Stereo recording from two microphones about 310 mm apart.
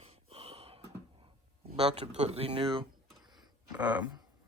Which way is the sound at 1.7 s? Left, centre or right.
Centre.